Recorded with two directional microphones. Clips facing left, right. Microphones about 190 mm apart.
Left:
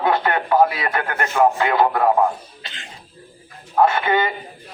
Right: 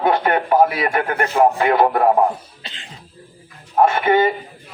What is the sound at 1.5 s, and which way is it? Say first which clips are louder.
Speech: right 2 dB; 15° right (ahead or behind).